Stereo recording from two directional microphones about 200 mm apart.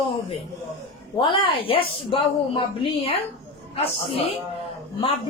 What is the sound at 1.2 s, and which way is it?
Speech, 25° left (ahead or behind).